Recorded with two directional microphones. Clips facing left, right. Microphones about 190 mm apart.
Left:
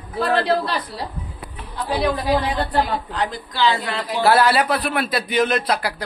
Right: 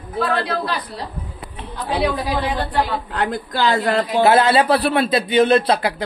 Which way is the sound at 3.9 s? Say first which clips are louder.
Right 2 dB; 25° right (ahead or behind).